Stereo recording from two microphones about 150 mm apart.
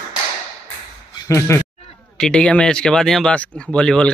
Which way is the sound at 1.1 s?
20° left (ahead or behind).